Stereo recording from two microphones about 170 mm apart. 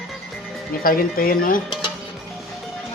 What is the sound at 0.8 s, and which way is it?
Speech, 55° left (ahead or behind).